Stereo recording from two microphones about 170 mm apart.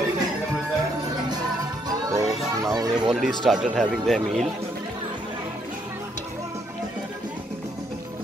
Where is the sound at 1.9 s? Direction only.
20° right (ahead or behind).